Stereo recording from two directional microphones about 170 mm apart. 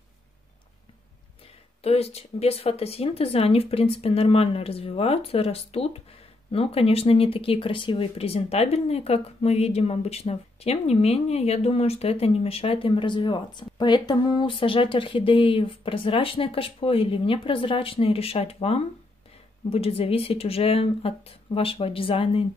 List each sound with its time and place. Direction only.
1.8 s speech: 35° left (ahead or behind)